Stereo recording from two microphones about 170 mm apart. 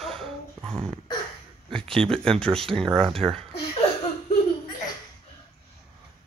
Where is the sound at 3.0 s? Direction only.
35° right (ahead or behind).